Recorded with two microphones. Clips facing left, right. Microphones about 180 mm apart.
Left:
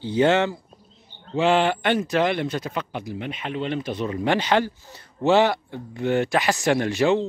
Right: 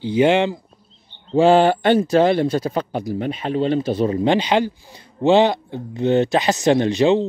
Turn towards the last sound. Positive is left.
turn(degrees=-20)  # may be behind; listen again after turning